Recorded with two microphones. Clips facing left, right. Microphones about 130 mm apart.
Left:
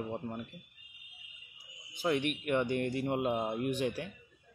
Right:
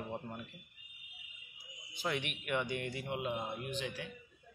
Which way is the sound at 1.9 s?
40° left (ahead or behind).